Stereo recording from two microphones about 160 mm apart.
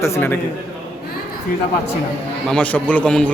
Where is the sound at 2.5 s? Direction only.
10° left (ahead or behind).